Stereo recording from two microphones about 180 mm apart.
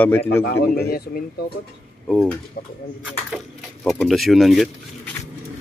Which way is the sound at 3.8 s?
Centre (ahead or behind).